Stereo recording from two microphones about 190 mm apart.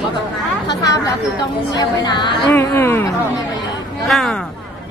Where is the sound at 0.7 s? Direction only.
20° left (ahead or behind).